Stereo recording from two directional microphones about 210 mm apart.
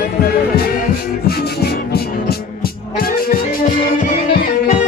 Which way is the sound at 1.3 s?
50° left (ahead or behind).